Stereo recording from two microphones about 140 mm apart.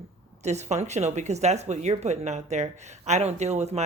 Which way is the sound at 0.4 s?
55° right (ahead or behind).